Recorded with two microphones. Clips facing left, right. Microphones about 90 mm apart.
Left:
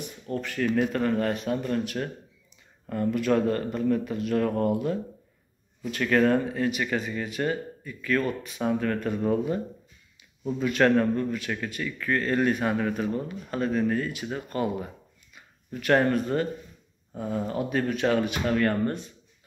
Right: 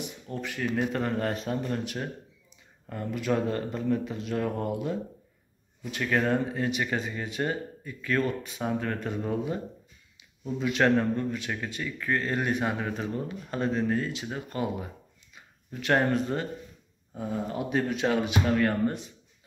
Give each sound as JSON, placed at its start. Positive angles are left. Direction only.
{"t": 0.3, "sound": "speech", "side_deg": -15}
{"t": 0.9, "sound": "speech", "side_deg": -25}
{"t": 10.6, "sound": "speech", "side_deg": -15}